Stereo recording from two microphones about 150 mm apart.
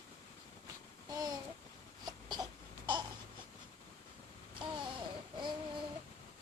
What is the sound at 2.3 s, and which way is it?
Crying, 30° right (ahead or behind).